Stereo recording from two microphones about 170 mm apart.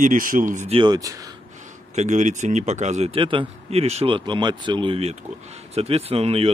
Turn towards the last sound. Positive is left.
turn(degrees=-35)  # may be behind; listen again after turning